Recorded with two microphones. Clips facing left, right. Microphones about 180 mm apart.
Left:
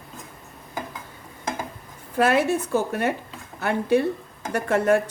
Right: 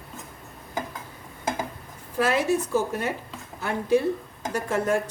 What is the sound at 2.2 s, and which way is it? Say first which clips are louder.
A woman's voice: left 3 dB; 60° left (ahead or behind).